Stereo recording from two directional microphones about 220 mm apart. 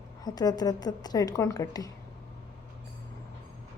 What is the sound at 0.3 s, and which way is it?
A woman's voice, 15° left (ahead or behind).